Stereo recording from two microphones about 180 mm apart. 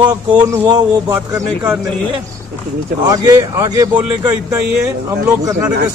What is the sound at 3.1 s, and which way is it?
Speech, 20° right (ahead or behind).